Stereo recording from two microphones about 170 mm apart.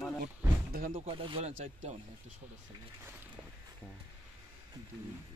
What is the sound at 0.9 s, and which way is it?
Speech, 30° right (ahead or behind).